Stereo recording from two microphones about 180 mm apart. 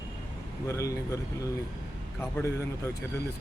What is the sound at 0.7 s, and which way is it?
Speech, 15° left (ahead or behind).